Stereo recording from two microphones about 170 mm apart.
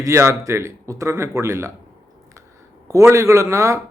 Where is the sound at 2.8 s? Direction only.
20° right (ahead or behind).